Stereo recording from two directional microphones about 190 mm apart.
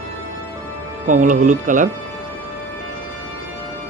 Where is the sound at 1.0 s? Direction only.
45° right (ahead or behind).